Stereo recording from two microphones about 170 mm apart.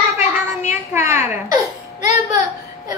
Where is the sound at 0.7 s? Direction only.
15° right (ahead or behind).